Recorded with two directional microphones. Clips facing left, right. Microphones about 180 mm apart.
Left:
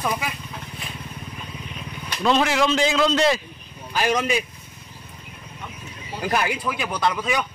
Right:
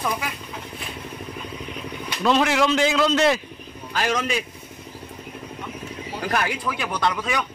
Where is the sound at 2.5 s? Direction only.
5° right (ahead or behind).